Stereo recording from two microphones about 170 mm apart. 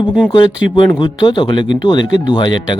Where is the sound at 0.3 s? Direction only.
25° left (ahead or behind).